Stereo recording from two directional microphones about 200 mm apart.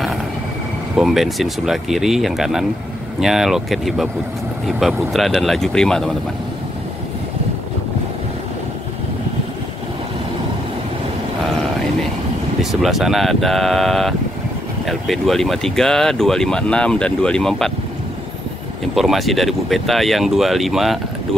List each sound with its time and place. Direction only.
0.9 s speech: centre (ahead or behind)
12.8 s speech: centre (ahead or behind)
18.9 s speech: centre (ahead or behind)